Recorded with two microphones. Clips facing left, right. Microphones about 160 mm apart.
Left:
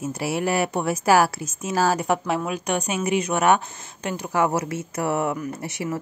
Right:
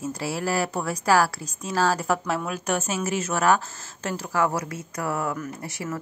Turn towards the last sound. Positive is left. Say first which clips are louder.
# left 4 dB
turn(degrees=15)  # may be behind; listen again after turning